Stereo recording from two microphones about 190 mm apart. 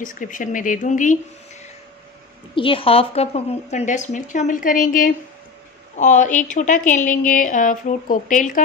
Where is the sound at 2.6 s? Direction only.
30° left (ahead or behind).